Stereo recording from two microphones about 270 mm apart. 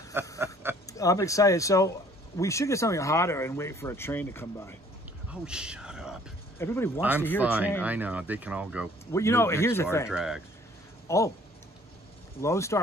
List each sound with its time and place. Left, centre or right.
0.4 s a sound: centre
0.9 s speech: centre
5.3 s a sound: centre
6.6 s speech: centre
7.0 s speech: centre
9.1 s speech: centre
10.0 s speech: centre
11.1 s speech: centre
12.4 s speech: centre